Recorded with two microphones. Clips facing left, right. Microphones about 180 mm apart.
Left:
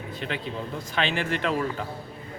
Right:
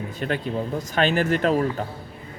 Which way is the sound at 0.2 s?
45° right (ahead or behind).